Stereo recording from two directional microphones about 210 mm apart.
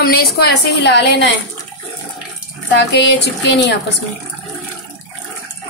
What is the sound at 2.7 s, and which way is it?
Speech, 55° left (ahead or behind).